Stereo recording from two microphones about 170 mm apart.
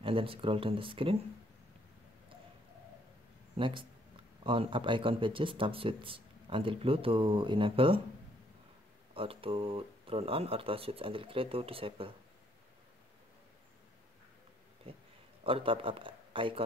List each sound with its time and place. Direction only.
0.0 s speech: 30° right (ahead or behind)
3.5 s speech: 30° right (ahead or behind)
9.1 s speech: 30° right (ahead or behind)
15.4 s speech: 30° right (ahead or behind)